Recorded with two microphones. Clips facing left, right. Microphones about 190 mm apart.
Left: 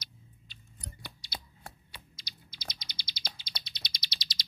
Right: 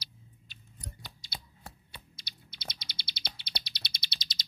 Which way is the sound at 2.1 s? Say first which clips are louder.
Even; 60° right (ahead or behind).